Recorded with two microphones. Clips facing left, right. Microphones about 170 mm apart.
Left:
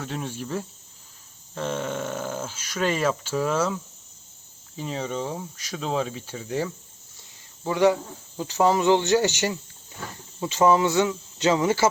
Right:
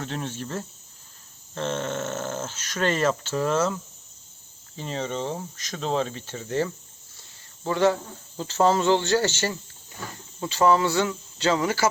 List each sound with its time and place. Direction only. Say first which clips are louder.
0.0 s speech: even; 5° left (ahead or behind)
4.8 s speech: even; 5° left (ahead or behind); by 11.9 s 20° left (ahead or behind)